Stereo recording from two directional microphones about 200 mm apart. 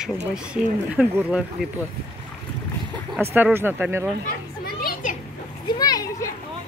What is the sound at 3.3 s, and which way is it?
Speech, 10° right (ahead or behind).